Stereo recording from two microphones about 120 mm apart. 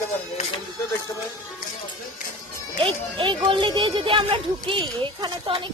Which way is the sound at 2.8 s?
45° right (ahead or behind).